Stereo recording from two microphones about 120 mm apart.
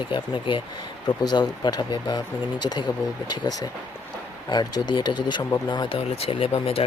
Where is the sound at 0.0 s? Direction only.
45° left (ahead or behind).